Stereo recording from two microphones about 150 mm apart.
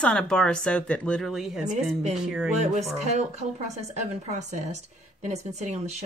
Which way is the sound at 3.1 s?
50° right (ahead or behind).